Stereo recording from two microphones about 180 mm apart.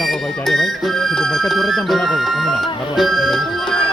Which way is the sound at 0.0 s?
Centre (ahead or behind).